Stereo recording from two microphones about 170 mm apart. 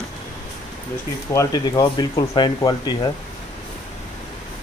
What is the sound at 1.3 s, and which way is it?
Speech, 20° left (ahead or behind).